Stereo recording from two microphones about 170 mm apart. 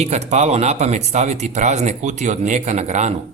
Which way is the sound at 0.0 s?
40° right (ahead or behind).